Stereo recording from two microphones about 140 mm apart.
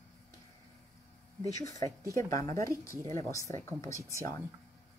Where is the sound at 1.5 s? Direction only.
25° left (ahead or behind).